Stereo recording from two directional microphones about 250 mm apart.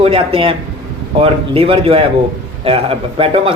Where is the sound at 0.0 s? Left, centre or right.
Right.